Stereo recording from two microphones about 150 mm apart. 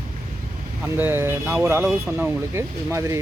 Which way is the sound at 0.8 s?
15° right (ahead or behind).